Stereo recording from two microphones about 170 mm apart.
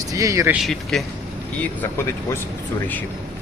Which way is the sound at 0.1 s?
20° right (ahead or behind).